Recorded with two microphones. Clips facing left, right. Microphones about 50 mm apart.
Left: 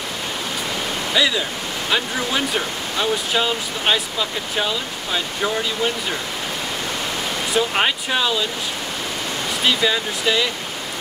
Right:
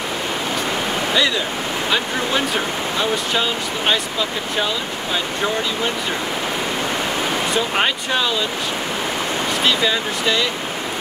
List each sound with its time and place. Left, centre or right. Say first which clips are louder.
1.1 s speech: left 1 dB; centre
3.0 s speech: left 1 dB; centre
7.5 s speech: left 4 dB; centre
9.7 s speech: left 1 dB; centre